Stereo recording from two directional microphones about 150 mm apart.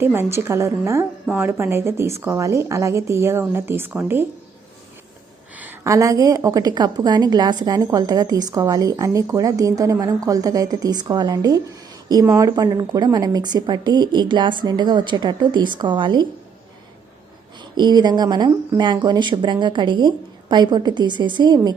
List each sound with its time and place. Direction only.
0.0 s a woman's voice: 15° right (ahead or behind)
5.5 s a woman's voice: 15° right (ahead or behind); by 16.2 s 30° right (ahead or behind)
17.7 s a woman's voice: 30° right (ahead or behind)